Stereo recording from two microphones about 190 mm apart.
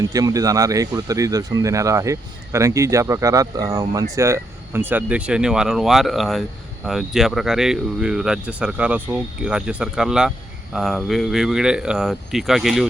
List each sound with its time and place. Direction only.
0.1 s speech: 20° right (ahead or behind); by 12.9 s centre (ahead or behind)